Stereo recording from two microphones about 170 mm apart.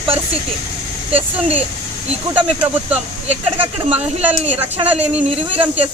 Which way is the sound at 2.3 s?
10° right (ahead or behind).